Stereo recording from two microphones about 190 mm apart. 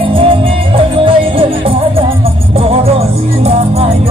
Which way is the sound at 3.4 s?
30° right (ahead or behind).